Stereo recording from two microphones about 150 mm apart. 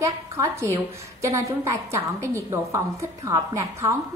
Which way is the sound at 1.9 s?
20° right (ahead or behind).